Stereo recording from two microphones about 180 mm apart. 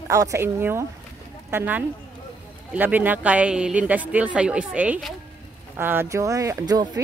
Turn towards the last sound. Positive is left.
turn(degrees=-20)  # may be behind; listen again after turning